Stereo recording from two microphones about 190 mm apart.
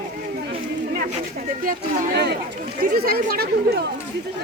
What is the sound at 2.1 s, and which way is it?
Speech, 60° right (ahead or behind).